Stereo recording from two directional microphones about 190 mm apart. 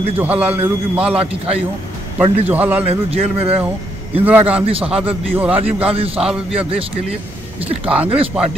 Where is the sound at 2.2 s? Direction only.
30° right (ahead or behind).